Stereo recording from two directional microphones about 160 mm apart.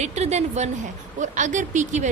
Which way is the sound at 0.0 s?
45° right (ahead or behind).